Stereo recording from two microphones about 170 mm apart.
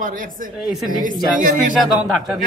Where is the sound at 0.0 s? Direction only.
50° right (ahead or behind).